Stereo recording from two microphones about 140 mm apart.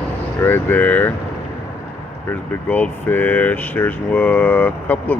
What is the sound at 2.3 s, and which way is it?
Speech, 15° left (ahead or behind).